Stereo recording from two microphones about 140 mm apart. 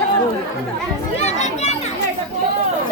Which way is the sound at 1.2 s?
55° left (ahead or behind).